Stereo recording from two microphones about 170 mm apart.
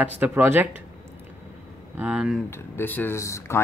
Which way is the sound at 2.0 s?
5° right (ahead or behind).